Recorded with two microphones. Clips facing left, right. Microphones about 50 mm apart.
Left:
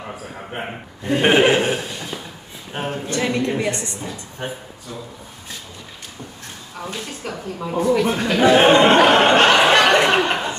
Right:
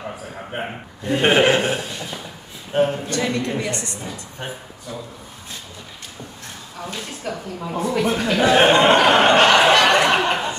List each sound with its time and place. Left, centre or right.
1.1 s chuckle: centre
2.7 s a woman's voice: centre; by 3.9 s left
4.0 s a woman's voice: centre
7.2 s a woman's voice: centre
9.0 s a sound: centre